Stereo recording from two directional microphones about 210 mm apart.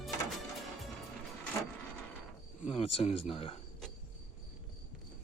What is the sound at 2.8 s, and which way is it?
Speech, 25° left (ahead or behind).